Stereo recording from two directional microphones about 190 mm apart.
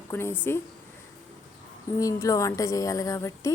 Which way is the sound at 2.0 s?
15° left (ahead or behind).